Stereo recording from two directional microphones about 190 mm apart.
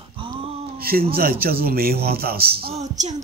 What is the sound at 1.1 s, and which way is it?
Speech, 50° right (ahead or behind).